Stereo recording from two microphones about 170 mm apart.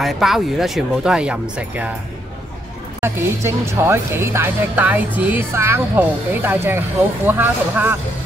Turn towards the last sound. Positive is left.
turn(degrees=-10)  # may be behind; listen again after turning